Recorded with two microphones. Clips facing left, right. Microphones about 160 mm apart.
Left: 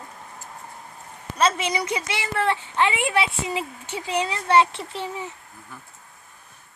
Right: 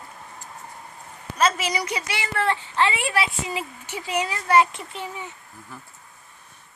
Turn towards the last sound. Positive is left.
turn(degrees=30)  # may be behind; listen again after turning